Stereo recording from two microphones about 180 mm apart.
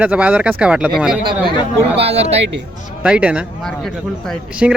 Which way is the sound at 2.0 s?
35° right (ahead or behind).